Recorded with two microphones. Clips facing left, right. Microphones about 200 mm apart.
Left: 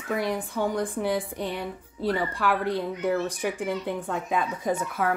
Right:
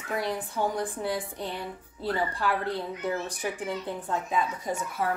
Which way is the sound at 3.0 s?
55° left (ahead or behind).